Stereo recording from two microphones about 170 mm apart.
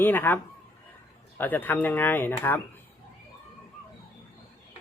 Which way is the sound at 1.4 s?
10° left (ahead or behind).